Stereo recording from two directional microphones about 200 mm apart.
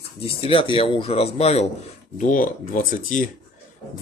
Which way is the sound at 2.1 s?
40° left (ahead or behind).